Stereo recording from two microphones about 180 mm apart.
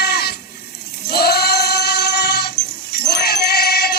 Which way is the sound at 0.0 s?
60° left (ahead or behind).